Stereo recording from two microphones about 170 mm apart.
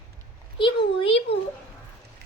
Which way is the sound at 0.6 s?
30° left (ahead or behind).